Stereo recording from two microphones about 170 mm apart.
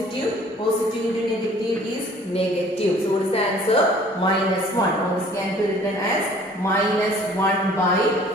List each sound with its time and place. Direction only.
3.7 s a woman's voice: 35° left (ahead or behind)